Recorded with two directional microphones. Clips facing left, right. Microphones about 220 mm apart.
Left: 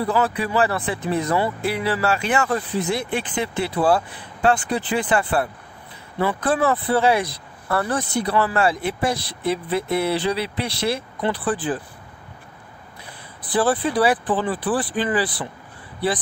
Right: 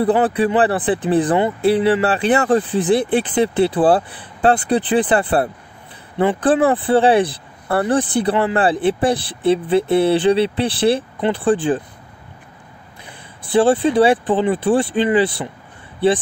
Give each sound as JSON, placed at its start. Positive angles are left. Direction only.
{"t": 0.0, "sound": "speech", "side_deg": -30}
{"t": 13.4, "sound": "speech", "side_deg": -25}